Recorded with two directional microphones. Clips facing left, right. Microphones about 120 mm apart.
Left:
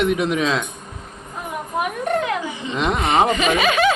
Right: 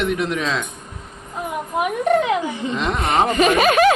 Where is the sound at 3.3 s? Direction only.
45° right (ahead or behind).